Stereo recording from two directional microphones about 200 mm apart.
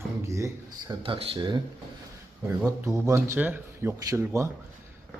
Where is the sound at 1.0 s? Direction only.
25° right (ahead or behind).